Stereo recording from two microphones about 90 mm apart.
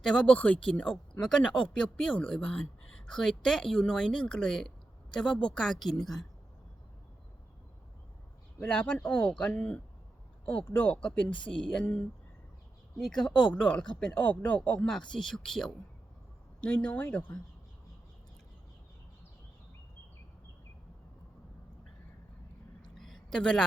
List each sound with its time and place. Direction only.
0.0 s a woman's voice: 5° left (ahead or behind)
8.6 s a woman's voice: 15° left (ahead or behind)
14.8 s a woman's voice: 5° left (ahead or behind)
16.6 s speech: 20° left (ahead or behind)
23.0 s a sound: 5° left (ahead or behind)